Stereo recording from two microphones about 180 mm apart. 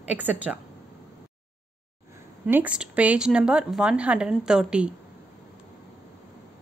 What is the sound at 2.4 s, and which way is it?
Speech, 5° right (ahead or behind).